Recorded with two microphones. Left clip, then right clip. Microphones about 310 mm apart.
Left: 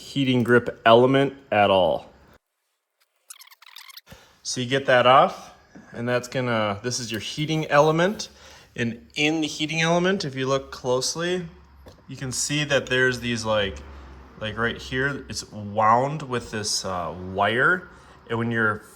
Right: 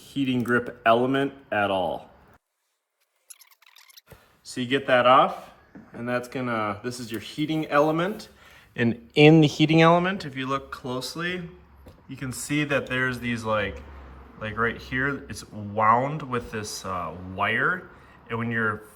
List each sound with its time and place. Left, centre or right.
0.0 s speech: left
4.4 s speech: centre
9.1 s speech: centre